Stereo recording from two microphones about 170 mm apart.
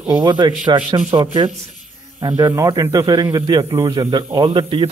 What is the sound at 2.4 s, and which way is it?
Speech, 20° right (ahead or behind).